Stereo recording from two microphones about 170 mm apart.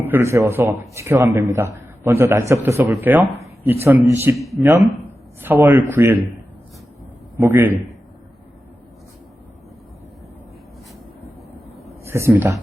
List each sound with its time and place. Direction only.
0.1 s a man's voice: 15° right (ahead or behind)
7.3 s a man's voice: 10° right (ahead or behind)
12.0 s a man's voice: 15° right (ahead or behind)